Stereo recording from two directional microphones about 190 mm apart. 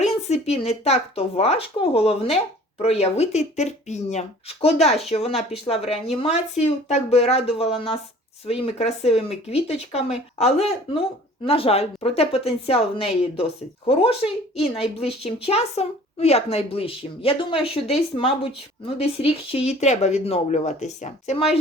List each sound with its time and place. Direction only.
0.0 s speech: 35° left (ahead or behind)